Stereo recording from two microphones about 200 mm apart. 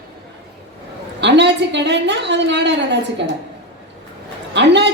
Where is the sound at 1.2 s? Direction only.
60° right (ahead or behind).